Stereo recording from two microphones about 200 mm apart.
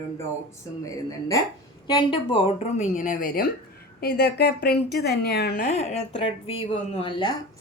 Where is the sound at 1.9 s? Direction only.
25° left (ahead or behind).